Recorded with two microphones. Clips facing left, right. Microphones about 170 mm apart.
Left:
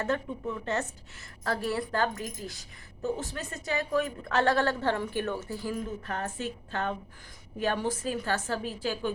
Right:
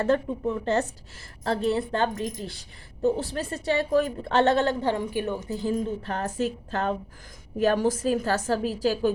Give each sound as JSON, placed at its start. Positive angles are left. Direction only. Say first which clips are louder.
{"t": 0.0, "sound": "a woman's voice", "louder": "right 7 dB", "side_deg": -35}
{"t": 5.7, "sound": "a woman's voice", "louder": "right 6 dB", "side_deg": -30}